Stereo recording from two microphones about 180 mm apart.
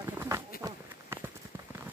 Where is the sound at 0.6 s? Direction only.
15° right (ahead or behind).